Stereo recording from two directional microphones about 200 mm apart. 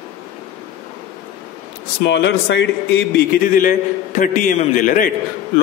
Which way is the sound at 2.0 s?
60° left (ahead or behind).